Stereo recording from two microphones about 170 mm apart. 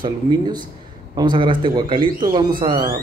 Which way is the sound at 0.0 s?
25° right (ahead or behind).